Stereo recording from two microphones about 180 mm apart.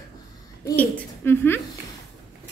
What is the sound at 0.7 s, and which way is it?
Speech, 10° left (ahead or behind).